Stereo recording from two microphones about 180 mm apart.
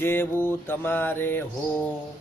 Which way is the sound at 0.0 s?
10° left (ahead or behind).